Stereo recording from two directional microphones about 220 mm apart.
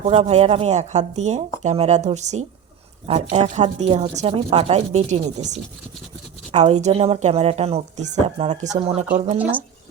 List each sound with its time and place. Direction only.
0.0 s speech: 30° right (ahead or behind)
9.4 s speech: 10° right (ahead or behind)